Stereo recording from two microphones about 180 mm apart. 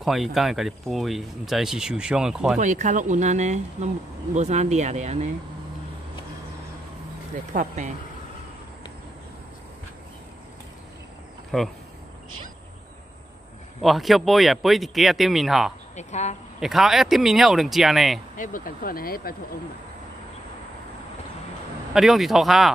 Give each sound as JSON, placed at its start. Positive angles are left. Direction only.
{"t": 0.0, "sound": "speech", "side_deg": 0}
{"t": 2.6, "sound": "speech", "side_deg": -45}
{"t": 7.5, "sound": "speech", "side_deg": -40}
{"t": 11.5, "sound": "speech", "side_deg": 0}
{"t": 13.8, "sound": "speech", "side_deg": 0}
{"t": 16.0, "sound": "speech", "side_deg": 40}
{"t": 16.5, "sound": "speech", "side_deg": 0}
{"t": 18.3, "sound": "speech", "side_deg": 45}
{"t": 21.9, "sound": "speech", "side_deg": 0}